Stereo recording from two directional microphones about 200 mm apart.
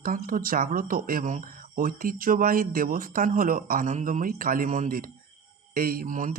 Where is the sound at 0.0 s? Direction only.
45° right (ahead or behind).